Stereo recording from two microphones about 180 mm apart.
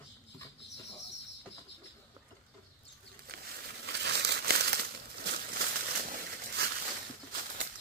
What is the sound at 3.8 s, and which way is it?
Crumpling, 70° right (ahead or behind).